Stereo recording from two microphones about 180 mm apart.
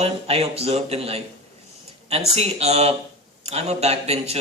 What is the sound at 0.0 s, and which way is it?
Speech, 35° right (ahead or behind).